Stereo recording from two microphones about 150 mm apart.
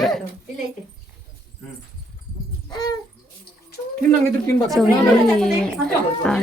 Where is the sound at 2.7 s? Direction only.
25° left (ahead or behind).